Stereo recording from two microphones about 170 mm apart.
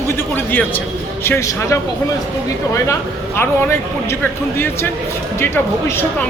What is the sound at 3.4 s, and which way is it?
Speech, 10° left (ahead or behind).